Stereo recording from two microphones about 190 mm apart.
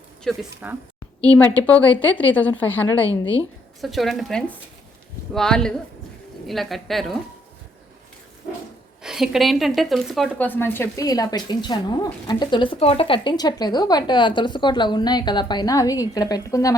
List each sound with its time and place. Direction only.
0.3 s speech: 10° right (ahead or behind)
1.2 s a woman's voice: 10° left (ahead or behind)
9.0 s speech: centre (ahead or behind); by 16.7 s 15° left (ahead or behind)